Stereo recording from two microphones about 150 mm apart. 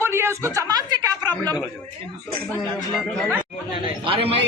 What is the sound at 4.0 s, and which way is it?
Speech, 40° right (ahead or behind).